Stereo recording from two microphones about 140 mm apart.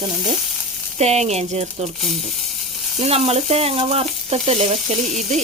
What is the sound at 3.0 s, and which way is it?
Frying, 45° right (ahead or behind).